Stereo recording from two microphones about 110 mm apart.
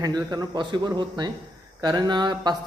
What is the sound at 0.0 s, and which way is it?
Speech, 40° right (ahead or behind).